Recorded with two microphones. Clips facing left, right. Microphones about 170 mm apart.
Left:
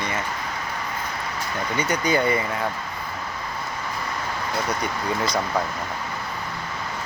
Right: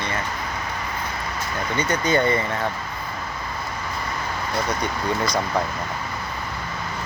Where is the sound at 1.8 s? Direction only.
10° left (ahead or behind).